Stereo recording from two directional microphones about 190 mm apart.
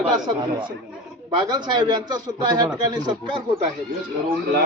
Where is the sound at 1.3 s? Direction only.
25° right (ahead or behind).